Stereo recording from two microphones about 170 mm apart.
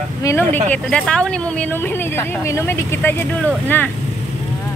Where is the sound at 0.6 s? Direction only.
5° left (ahead or behind).